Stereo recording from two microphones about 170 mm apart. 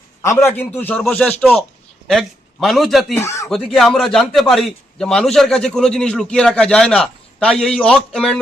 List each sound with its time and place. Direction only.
0.2 s a man's voice: 15° left (ahead or behind); by 3.2 s centre (ahead or behind)
3.2 s speech: 15° left (ahead or behind)
3.5 s a man's voice: centre (ahead or behind)